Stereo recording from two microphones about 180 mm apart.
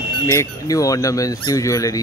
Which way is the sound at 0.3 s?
15° left (ahead or behind).